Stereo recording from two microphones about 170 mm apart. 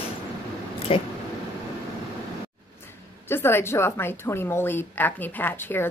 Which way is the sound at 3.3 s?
15° left (ahead or behind).